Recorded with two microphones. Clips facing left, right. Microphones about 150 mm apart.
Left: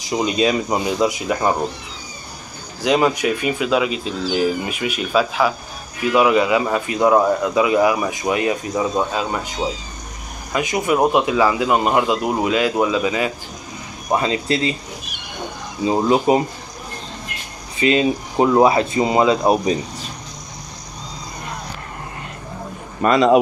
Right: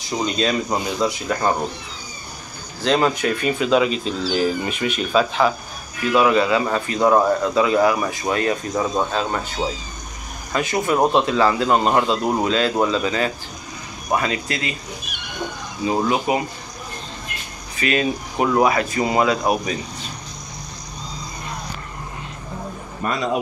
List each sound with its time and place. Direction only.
0.1 s speech: 10° left (ahead or behind)
2.8 s speech: 10° left (ahead or behind)
14.1 s speech: 25° left (ahead or behind)
15.8 s speech: 25° left (ahead or behind)
17.7 s speech: 25° left (ahead or behind)
23.0 s speech: 90° left